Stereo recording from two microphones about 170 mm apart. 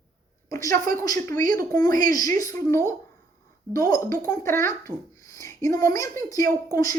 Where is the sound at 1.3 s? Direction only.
55° right (ahead or behind).